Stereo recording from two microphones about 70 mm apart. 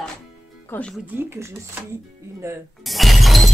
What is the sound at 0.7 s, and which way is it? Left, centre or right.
Speech, left.